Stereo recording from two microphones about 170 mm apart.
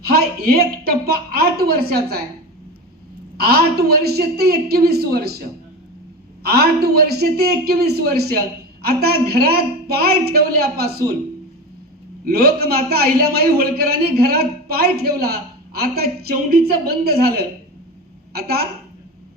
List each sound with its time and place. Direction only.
0.0 s a man's voice: 65° right (ahead or behind)
3.3 s a woman's voice: 65° right (ahead or behind)
6.4 s a woman's voice: 65° right (ahead or behind)
12.2 s a man's voice: 65° right (ahead or behind)